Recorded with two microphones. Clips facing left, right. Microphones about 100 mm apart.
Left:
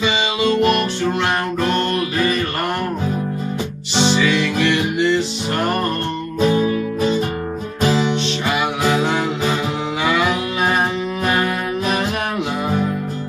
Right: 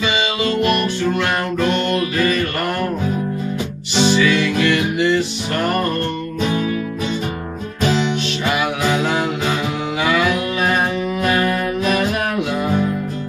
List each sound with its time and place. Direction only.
0.7 s music: 30° left (ahead or behind)
4.0 s music: 30° left (ahead or behind)
7.8 s music: 30° left (ahead or behind)
11.2 s music: 30° left (ahead or behind)